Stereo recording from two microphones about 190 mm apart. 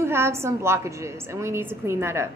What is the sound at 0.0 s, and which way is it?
A woman's voice, 15° right (ahead or behind).